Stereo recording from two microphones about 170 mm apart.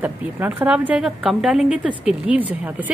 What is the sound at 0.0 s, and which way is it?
A woman's voice, 10° right (ahead or behind).